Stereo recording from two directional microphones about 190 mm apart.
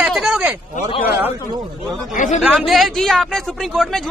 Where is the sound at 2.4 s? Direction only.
Centre (ahead or behind).